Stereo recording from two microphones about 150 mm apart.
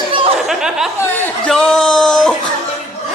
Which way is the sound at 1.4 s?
5° left (ahead or behind).